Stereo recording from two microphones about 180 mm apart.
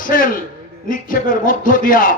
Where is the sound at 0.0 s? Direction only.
50° left (ahead or behind).